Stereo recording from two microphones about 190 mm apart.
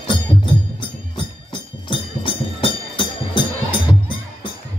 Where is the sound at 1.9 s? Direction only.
25° left (ahead or behind).